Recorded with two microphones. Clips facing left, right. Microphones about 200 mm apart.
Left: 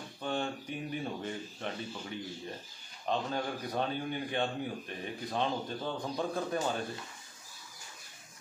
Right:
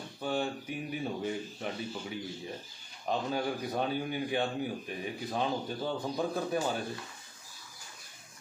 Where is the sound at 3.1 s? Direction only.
5° right (ahead or behind).